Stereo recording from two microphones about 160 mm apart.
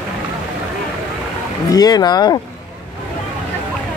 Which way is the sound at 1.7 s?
25° left (ahead or behind).